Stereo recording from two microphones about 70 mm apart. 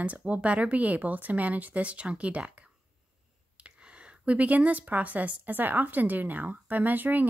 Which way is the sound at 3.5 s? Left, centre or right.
Centre.